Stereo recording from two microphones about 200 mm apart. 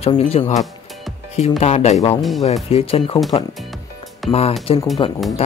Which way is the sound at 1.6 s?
35° left (ahead or behind).